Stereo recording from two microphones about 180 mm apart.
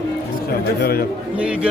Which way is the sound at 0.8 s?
55° left (ahead or behind).